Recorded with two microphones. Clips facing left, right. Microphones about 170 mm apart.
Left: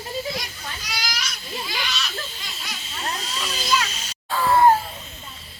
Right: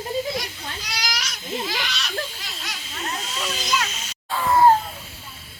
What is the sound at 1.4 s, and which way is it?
Goat, 20° right (ahead or behind).